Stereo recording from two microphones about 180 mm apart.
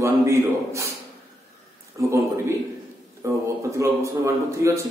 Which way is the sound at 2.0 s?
15° right (ahead or behind).